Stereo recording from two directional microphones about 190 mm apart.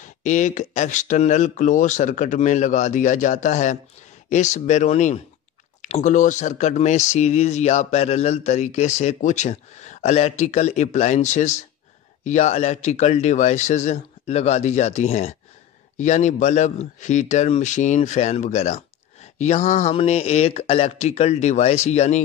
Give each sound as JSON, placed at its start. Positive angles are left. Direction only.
{"t": 0.0, "sound": "speech", "side_deg": 40}